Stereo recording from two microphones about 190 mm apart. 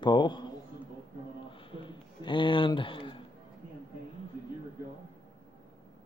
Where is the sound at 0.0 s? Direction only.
25° left (ahead or behind).